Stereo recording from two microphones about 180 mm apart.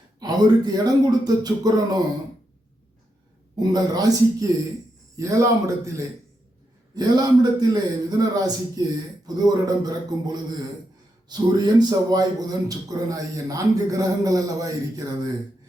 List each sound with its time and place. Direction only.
0.2 s speech: 20° right (ahead or behind)
3.5 s a man's voice: 25° right (ahead or behind)